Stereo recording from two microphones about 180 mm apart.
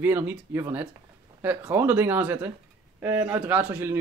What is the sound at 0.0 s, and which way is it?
Speech, 10° right (ahead or behind).